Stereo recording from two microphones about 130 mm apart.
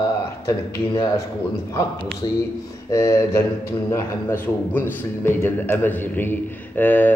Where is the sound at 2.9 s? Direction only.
20° left (ahead or behind).